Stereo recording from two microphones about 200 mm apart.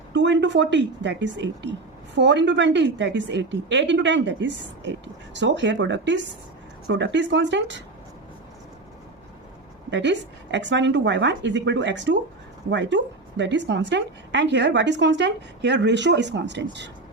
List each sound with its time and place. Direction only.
0.1 s a woman's voice: 60° right (ahead or behind)
9.9 s a woman's voice: 65° right (ahead or behind)